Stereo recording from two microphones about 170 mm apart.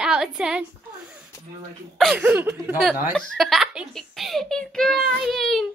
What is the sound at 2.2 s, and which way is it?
Speech, 10° right (ahead or behind).